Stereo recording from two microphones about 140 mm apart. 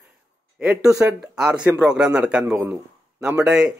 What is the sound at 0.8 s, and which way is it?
Speech, 20° right (ahead or behind).